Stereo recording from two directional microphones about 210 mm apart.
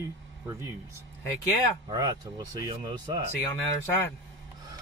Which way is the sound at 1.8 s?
20° right (ahead or behind).